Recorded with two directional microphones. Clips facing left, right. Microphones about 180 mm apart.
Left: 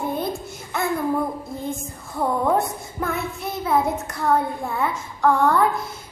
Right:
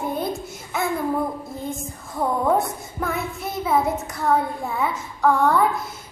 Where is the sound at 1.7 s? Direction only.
Centre (ahead or behind).